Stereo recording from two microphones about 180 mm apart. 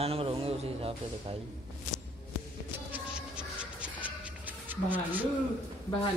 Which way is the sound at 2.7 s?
10° right (ahead or behind).